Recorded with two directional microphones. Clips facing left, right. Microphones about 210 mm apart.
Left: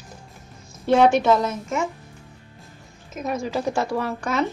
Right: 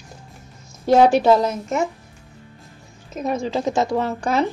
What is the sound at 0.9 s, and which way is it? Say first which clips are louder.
Speech: right 3 dB; 35° right (ahead or behind).